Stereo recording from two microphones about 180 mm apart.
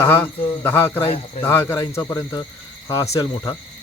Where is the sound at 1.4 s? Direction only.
15° left (ahead or behind).